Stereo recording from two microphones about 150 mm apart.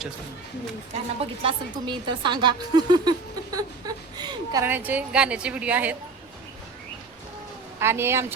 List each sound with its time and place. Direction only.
1.2 s a woman's voice: 40° right (ahead or behind)
4.7 s a woman's voice: 10° right (ahead or behind)
7.8 s a woman's voice: 15° right (ahead or behind)